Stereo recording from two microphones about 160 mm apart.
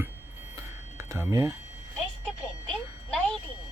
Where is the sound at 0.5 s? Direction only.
20° right (ahead or behind).